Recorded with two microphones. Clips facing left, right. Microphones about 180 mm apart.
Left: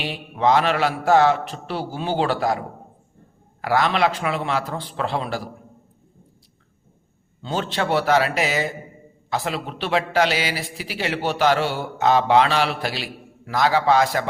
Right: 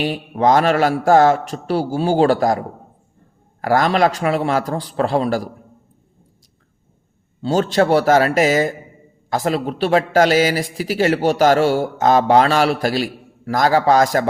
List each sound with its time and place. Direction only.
0.0 s speech: 45° right (ahead or behind)
7.4 s speech: 40° right (ahead or behind)